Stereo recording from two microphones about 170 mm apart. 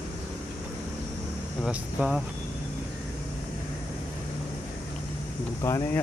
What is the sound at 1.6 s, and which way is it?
Speech, 5° right (ahead or behind).